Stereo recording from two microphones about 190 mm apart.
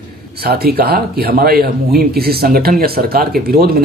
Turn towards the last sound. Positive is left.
turn(degrees=-50)  # may be behind; listen again after turning